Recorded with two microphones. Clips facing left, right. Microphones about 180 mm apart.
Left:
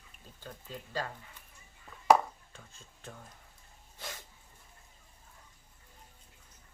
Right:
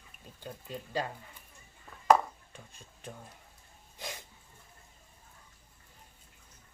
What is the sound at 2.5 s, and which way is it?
Speech, 15° right (ahead or behind).